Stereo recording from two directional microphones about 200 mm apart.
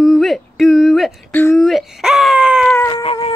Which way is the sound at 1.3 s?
10° left (ahead or behind).